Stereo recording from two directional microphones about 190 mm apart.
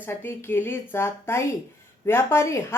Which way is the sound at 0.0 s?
10° left (ahead or behind).